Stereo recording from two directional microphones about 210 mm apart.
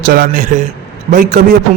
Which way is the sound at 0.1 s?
40° right (ahead or behind).